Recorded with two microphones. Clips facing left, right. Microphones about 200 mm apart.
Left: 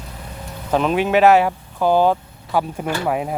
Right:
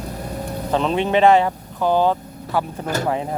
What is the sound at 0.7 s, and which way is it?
Speech, 10° left (ahead or behind).